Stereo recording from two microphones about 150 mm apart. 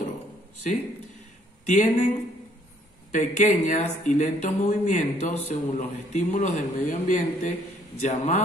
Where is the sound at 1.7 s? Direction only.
55° left (ahead or behind).